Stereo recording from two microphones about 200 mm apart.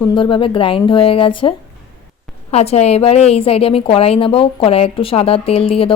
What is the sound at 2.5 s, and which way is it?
A woman's voice, 30° left (ahead or behind).